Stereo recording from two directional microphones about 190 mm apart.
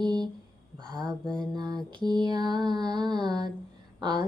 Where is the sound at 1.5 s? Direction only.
20° right (ahead or behind).